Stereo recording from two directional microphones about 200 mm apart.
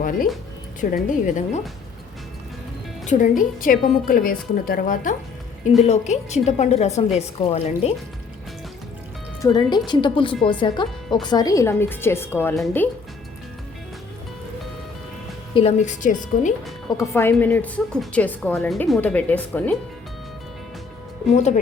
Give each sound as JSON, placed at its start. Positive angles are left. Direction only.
{"t": 0.8, "sound": "a woman's voice", "side_deg": 40}
{"t": 3.1, "sound": "a woman's voice", "side_deg": 40}
{"t": 5.8, "sound": "a woman's voice", "side_deg": 35}
{"t": 9.4, "sound": "a woman's voice", "side_deg": 20}
{"t": 15.5, "sound": "a woman's voice", "side_deg": 35}
{"t": 17.0, "sound": "a woman's voice", "side_deg": 10}
{"t": 21.3, "sound": "a woman's voice", "side_deg": 35}